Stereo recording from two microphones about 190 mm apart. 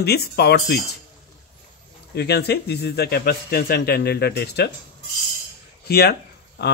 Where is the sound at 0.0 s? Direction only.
55° left (ahead or behind).